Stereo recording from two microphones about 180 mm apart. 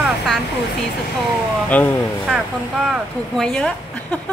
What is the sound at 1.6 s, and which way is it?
Speech, 10° left (ahead or behind).